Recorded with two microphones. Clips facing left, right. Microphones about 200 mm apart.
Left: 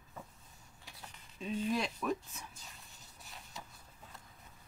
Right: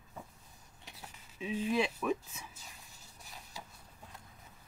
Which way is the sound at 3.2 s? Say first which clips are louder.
Right 1 dB; centre (ahead or behind).